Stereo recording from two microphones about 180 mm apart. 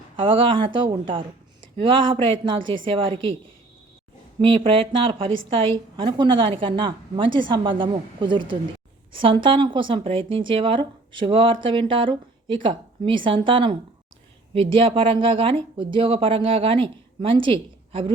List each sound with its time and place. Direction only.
0.2 s a woman's voice: 30° right (ahead or behind)
4.4 s a woman's voice: 30° right (ahead or behind)